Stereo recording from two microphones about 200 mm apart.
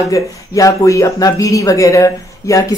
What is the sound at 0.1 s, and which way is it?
Speech, 15° left (ahead or behind).